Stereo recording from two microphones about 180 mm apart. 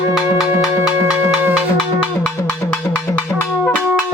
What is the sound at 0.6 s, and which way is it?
Music, 5° right (ahead or behind).